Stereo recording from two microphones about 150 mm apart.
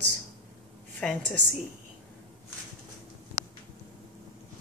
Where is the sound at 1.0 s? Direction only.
5° left (ahead or behind).